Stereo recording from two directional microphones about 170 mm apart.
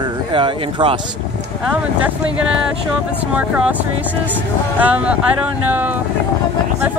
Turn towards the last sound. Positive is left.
turn(degrees=-10)  # may be behind; listen again after turning